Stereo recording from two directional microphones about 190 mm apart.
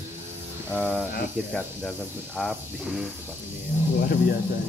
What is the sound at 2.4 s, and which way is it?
Speech, centre (ahead or behind).